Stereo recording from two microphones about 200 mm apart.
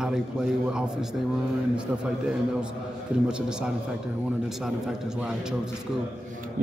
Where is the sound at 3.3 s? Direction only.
5° right (ahead or behind).